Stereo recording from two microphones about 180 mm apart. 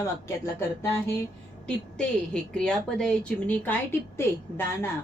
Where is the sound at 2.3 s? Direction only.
5° left (ahead or behind).